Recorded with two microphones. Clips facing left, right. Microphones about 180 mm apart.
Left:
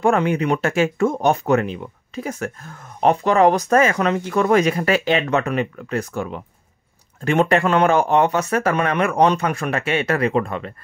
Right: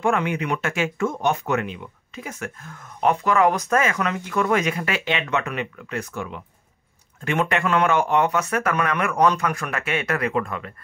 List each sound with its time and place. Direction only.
0.0 s speech: 35° left (ahead or behind)